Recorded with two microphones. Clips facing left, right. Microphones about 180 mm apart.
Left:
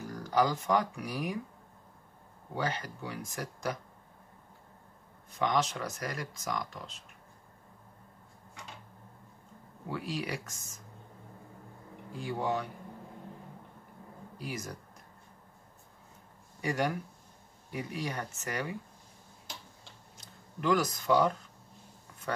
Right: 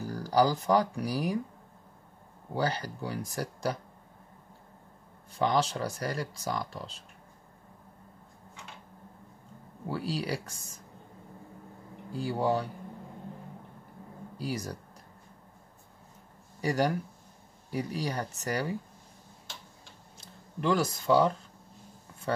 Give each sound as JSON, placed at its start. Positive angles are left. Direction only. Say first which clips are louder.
{"t": 0.0, "sound": "speech", "louder": "right 3 dB", "side_deg": -35}
{"t": 2.5, "sound": "speech", "louder": "right 4 dB", "side_deg": -35}
{"t": 5.4, "sound": "speech", "louder": "right 3 dB", "side_deg": -30}
{"t": 9.8, "sound": "speech", "louder": "right 3 dB", "side_deg": -35}
{"t": 12.1, "sound": "speech", "louder": "right 4 dB", "side_deg": -35}
{"t": 14.4, "sound": "speech", "louder": "right 5 dB", "side_deg": -35}
{"t": 16.6, "sound": "speech", "louder": "right 4 dB", "side_deg": -35}
{"t": 20.6, "sound": "speech", "louder": "right 1 dB", "side_deg": -30}